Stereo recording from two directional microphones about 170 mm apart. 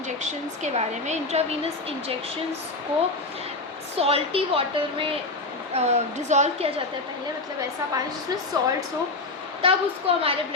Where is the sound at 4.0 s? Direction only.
35° right (ahead or behind).